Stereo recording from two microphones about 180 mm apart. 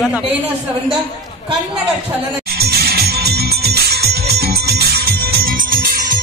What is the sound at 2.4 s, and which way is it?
Music, 60° right (ahead or behind).